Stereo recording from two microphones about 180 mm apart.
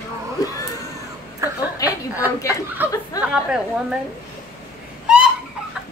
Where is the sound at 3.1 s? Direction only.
20° left (ahead or behind).